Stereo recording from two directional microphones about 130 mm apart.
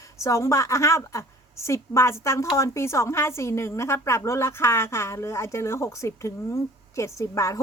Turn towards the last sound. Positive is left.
turn(degrees=25)  # may be behind; listen again after turning